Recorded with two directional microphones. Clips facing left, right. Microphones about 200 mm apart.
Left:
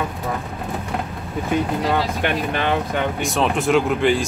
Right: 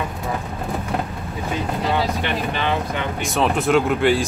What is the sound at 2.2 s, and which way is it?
Speech, 50° left (ahead or behind).